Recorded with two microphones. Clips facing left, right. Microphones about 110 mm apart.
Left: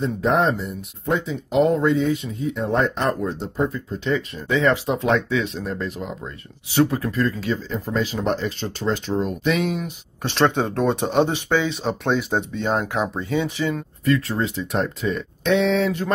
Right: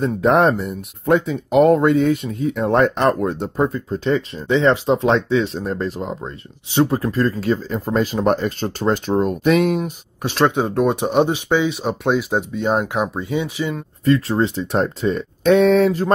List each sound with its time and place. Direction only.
0.0 s speech: 65° right (ahead or behind); by 9.9 s 45° right (ahead or behind)
10.2 s speech: 10° right (ahead or behind)
14.0 s speech: 30° right (ahead or behind)